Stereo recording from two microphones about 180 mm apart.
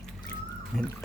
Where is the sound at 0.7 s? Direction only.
5° left (ahead or behind).